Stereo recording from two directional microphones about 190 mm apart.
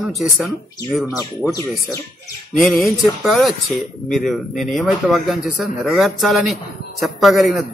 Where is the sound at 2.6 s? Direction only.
Centre (ahead or behind).